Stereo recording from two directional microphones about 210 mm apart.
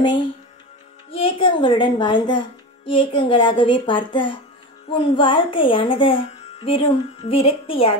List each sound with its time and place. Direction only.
1.1 s a woman's voice: 25° left (ahead or behind)